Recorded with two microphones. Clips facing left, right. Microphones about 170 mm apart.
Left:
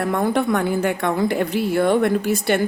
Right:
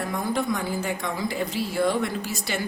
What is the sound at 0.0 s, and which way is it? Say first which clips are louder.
A woman's voice: left 7 dB; 65° left (ahead or behind).